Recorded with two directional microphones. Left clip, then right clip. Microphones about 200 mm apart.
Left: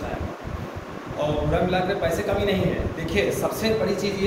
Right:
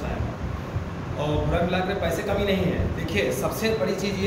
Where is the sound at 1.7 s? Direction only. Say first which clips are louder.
Left 2 dB; 15° left (ahead or behind).